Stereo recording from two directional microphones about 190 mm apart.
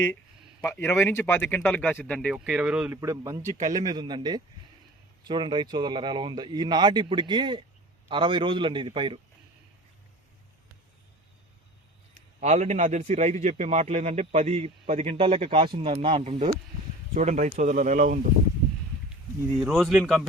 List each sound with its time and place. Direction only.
0.6 s speech: 15° left (ahead or behind); by 9.2 s 30° right (ahead or behind)
12.4 s a man's voice: 35° right (ahead or behind)
17.2 s a man's voice: 40° right (ahead or behind)
19.5 s speech: centre (ahead or behind)